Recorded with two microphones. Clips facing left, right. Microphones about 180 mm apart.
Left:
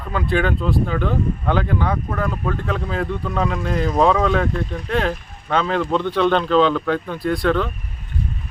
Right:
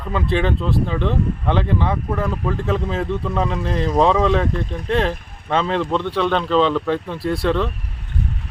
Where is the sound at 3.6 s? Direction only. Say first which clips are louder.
Even; 30° right (ahead or behind).